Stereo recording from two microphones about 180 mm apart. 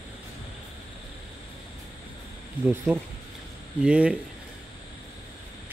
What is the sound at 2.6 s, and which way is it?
Speech, 25° right (ahead or behind).